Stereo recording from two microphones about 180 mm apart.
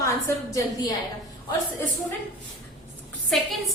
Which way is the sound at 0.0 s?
15° left (ahead or behind).